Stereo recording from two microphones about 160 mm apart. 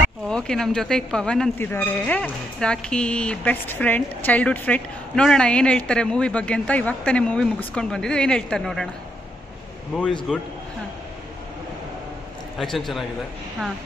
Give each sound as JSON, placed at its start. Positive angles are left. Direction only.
{"t": 0.3, "sound": "speech", "side_deg": 5}
{"t": 10.3, "sound": "a man's voice", "side_deg": 0}
{"t": 12.5, "sound": "a man's voice", "side_deg": 0}